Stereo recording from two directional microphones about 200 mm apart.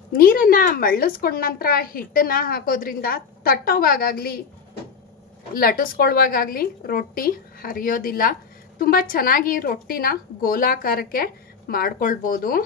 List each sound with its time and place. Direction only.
0.1 s a woman's voice: 45° left (ahead or behind)
5.5 s a woman's voice: 50° left (ahead or behind)